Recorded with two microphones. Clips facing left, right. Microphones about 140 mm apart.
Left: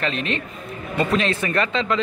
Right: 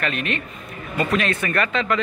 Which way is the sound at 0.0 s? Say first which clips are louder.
Left 1 dB; 30° left (ahead or behind).